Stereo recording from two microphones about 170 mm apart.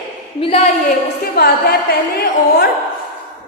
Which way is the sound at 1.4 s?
60° left (ahead or behind).